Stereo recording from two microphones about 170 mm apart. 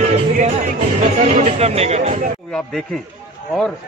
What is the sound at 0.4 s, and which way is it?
Music, 45° right (ahead or behind).